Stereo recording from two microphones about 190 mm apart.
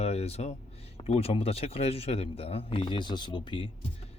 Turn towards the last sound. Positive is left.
turn(degrees=25)  # may be behind; listen again after turning